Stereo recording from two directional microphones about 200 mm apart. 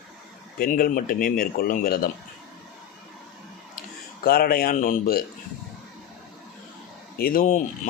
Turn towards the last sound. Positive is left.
turn(degrees=45)  # may be behind; listen again after turning